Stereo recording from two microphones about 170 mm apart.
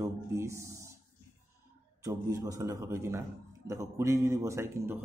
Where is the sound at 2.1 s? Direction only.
20° right (ahead or behind).